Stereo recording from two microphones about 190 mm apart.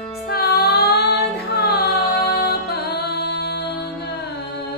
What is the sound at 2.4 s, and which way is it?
Music, 55° left (ahead or behind).